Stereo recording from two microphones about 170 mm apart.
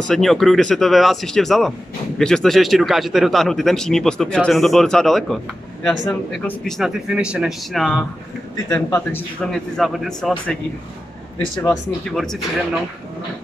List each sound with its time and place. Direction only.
0.1 s a man's voice: centre (ahead or behind)
8.6 s a man's voice: 10° left (ahead or behind)
12.1 s a man's voice: centre (ahead or behind)